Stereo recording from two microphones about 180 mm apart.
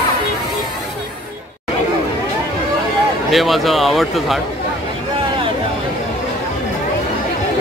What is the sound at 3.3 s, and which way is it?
Speech, centre (ahead or behind).